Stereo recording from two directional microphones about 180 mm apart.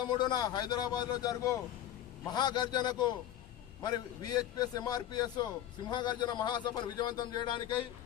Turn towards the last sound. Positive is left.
turn(degrees=25)  # may be behind; listen again after turning